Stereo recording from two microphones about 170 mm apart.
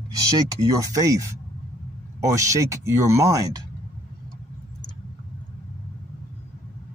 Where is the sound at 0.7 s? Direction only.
20° right (ahead or behind).